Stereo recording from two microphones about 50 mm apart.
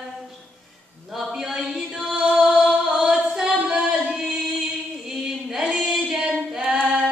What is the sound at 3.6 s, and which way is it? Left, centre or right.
Singing, centre.